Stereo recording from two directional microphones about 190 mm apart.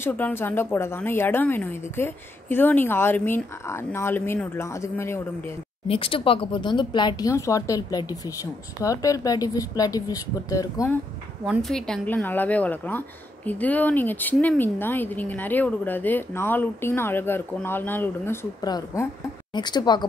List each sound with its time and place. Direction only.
0.0 s speech: 10° left (ahead or behind)
5.9 s speech: 30° left (ahead or behind)
11.4 s speech: centre (ahead or behind); by 20.1 s 20° left (ahead or behind)